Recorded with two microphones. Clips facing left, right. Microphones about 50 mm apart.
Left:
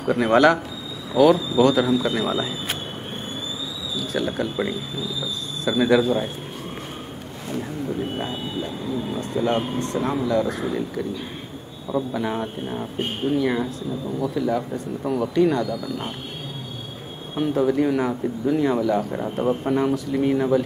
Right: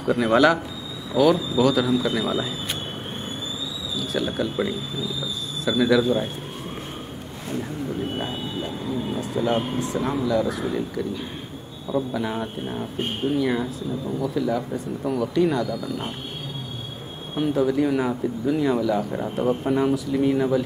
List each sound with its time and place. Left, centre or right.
0.0 s a man's voice: left
0.3 s speech: centre
4.1 s speech: centre
4.6 s speech: left
6.0 s speech: centre
8.2 s speech: centre
11.9 s speech: centre
17.4 s speech: centre